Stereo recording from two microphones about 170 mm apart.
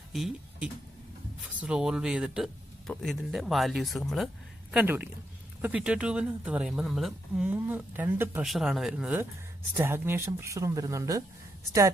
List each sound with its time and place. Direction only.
0.1 s speech: centre (ahead or behind); by 11.2 s 20° right (ahead or behind)